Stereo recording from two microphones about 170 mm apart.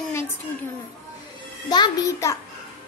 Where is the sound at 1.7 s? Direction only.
20° left (ahead or behind).